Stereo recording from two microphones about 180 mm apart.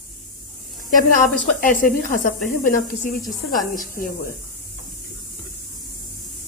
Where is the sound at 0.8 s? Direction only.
50° left (ahead or behind).